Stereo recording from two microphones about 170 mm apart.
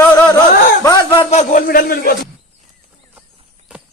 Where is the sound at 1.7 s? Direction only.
60° left (ahead or behind).